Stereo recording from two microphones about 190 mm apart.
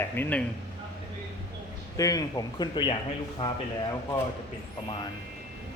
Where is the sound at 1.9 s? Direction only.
20° left (ahead or behind).